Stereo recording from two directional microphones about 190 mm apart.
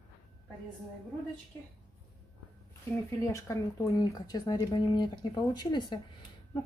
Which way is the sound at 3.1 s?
20° left (ahead or behind).